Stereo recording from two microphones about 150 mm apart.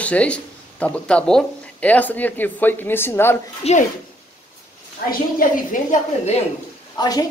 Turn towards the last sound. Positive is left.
turn(degrees=25)  # may be behind; listen again after turning